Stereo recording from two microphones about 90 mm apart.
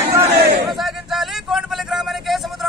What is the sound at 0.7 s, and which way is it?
Vehicle, centre (ahead or behind).